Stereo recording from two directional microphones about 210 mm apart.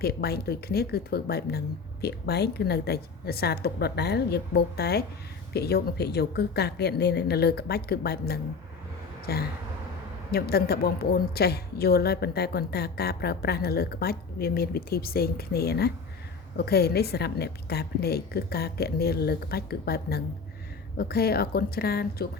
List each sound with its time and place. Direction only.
0.0 s a woman's voice: 50° left (ahead or behind)